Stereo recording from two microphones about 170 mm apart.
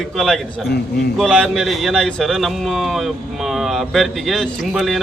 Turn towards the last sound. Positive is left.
turn(degrees=0)  # may be behind; listen again after turning